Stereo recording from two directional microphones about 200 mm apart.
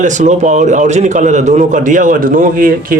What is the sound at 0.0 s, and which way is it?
Speech, 35° right (ahead or behind).